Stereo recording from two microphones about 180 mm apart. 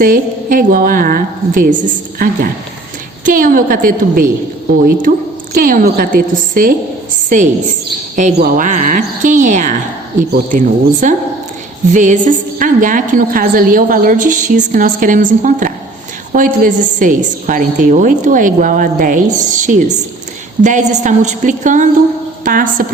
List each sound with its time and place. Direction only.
0.0 s a woman's voice: 50° right (ahead or behind)